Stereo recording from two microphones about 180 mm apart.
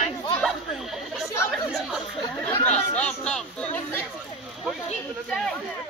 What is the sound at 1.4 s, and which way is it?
Speech, 5° left (ahead or behind).